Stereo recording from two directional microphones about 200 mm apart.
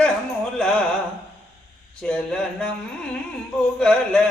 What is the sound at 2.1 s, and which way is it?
Speech, 5° left (ahead or behind).